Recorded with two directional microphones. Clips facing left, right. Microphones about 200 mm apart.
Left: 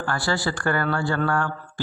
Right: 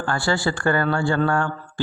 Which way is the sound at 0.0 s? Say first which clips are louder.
Right 3 dB; 25° right (ahead or behind).